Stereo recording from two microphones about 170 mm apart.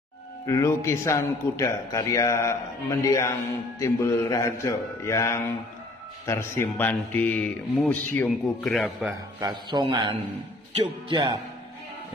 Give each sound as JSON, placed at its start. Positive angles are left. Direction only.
{"t": 0.5, "sound": "a man's voice", "side_deg": 20}
{"t": 9.4, "sound": "a man's voice", "side_deg": -25}